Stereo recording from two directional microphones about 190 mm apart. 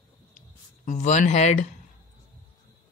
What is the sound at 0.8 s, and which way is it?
Speech, 40° left (ahead or behind).